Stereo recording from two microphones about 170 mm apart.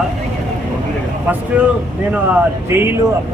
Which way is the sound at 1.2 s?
10° right (ahead or behind).